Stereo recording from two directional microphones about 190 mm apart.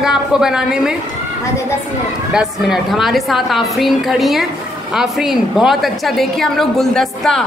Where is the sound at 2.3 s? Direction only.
5° right (ahead or behind).